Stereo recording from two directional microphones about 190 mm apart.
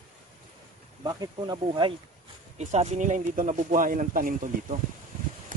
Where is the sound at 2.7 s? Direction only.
35° right (ahead or behind).